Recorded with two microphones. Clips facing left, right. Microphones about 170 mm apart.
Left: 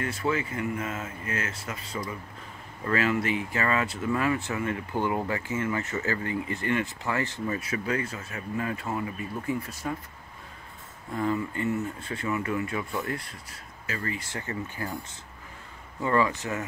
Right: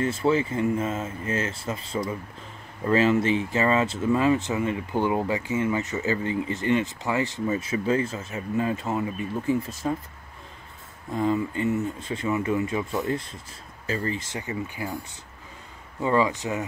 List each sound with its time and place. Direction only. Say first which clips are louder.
0.0 s speech: right 6 dB; 25° right (ahead or behind)
11.1 s speech: right 4 dB; 20° right (ahead or behind)
16.0 s speech: right 2 dB; 20° right (ahead or behind)